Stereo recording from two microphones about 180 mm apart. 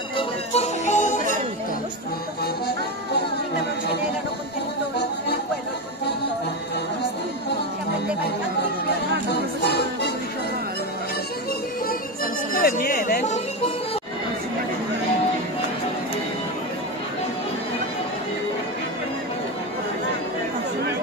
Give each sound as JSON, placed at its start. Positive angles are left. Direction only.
{"t": 0.2, "sound": "music", "side_deg": 40}
{"t": 9.3, "sound": "music", "side_deg": 65}
{"t": 12.5, "sound": "a sound", "side_deg": 55}